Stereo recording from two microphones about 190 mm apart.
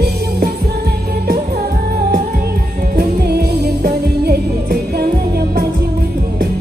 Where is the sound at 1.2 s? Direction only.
55° right (ahead or behind).